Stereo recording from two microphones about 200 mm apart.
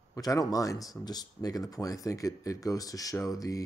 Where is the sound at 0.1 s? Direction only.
15° left (ahead or behind).